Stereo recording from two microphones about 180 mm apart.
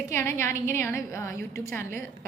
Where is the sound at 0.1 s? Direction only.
15° left (ahead or behind).